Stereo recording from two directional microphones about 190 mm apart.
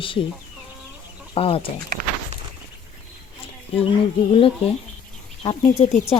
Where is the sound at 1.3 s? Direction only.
30° left (ahead or behind).